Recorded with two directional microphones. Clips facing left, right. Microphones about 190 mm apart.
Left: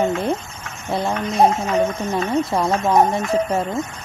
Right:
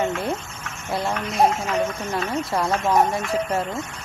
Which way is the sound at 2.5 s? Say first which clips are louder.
Even; 20° left (ahead or behind).